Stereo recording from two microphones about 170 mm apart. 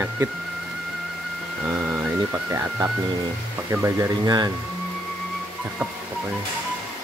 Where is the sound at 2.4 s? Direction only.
15° right (ahead or behind).